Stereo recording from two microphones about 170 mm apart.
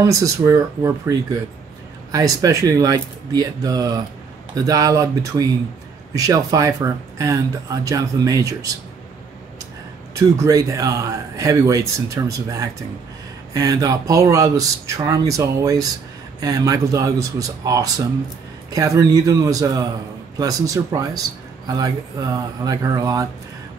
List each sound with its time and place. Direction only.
0.0 s speech: 15° right (ahead or behind)
2.1 s speech: 20° right (ahead or behind)
10.1 s speech: 20° right (ahead or behind)